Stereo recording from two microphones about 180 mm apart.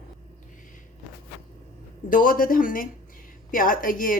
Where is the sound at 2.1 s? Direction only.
50° left (ahead or behind).